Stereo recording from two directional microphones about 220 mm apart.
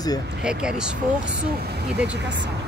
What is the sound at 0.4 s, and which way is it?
Speech, 5° right (ahead or behind).